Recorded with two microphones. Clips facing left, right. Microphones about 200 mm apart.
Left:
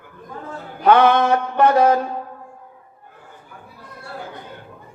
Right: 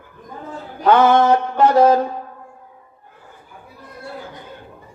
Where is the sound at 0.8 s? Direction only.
60° left (ahead or behind).